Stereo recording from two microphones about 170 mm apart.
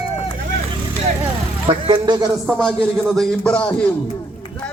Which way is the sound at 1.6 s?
30° right (ahead or behind).